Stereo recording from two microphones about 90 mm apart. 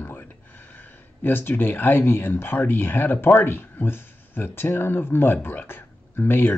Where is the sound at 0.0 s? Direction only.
20° left (ahead or behind).